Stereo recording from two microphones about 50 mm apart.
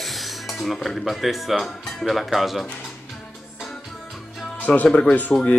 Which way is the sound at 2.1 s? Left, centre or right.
Centre.